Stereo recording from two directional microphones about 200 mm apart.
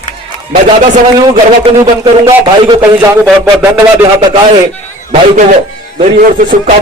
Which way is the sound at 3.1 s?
5° right (ahead or behind).